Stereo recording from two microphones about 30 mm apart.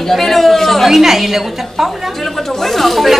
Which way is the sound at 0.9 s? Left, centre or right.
Centre.